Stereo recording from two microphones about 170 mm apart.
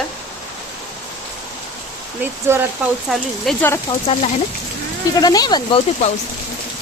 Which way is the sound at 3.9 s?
35° left (ahead or behind).